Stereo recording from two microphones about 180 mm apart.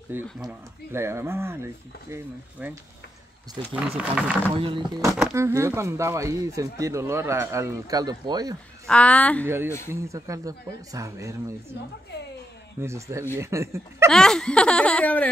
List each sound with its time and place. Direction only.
0.1 s speech: 10° right (ahead or behind)
4.6 s speech: 25° right (ahead or behind)
8.8 s a woman's voice: 5° left (ahead or behind)
10.0 s speech: 15° right (ahead or behind)
12.8 s speech: 15° right (ahead or behind)
14.1 s speech: 5° left (ahead or behind)